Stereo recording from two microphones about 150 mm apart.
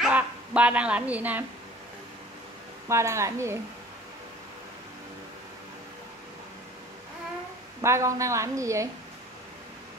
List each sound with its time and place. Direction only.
0.0 s speech: 10° right (ahead or behind)
2.9 s a woman's voice: 20° right (ahead or behind)
7.8 s a woman's voice: 20° right (ahead or behind)